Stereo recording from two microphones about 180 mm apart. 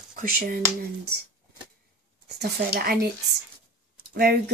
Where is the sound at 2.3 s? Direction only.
60° right (ahead or behind).